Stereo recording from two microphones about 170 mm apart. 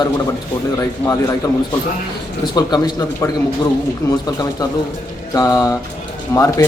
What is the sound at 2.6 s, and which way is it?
Speech, 25° left (ahead or behind).